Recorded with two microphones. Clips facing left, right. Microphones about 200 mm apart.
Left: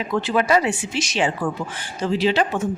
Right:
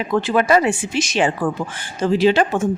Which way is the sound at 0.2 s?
50° right (ahead or behind).